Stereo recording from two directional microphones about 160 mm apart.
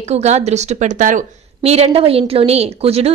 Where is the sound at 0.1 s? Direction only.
45° right (ahead or behind).